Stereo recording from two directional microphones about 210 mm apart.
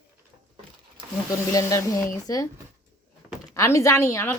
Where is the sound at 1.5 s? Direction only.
15° left (ahead or behind).